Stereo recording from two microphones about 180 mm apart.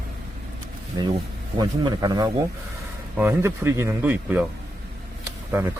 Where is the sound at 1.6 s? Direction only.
25° right (ahead or behind).